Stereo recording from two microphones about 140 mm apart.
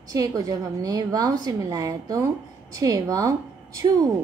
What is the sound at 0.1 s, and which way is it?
A woman's voice, 25° right (ahead or behind).